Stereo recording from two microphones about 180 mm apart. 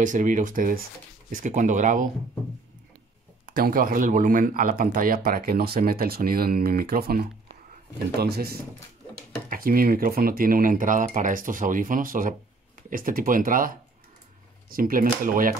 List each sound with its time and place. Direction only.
0.0 s speech: 45° right (ahead or behind)
3.4 s speech: 55° right (ahead or behind)